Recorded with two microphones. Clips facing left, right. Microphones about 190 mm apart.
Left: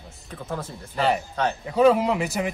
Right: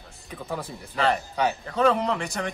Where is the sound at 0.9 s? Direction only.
5° left (ahead or behind).